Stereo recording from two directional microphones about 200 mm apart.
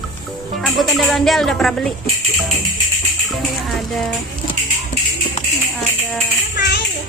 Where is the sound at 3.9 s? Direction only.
Centre (ahead or behind).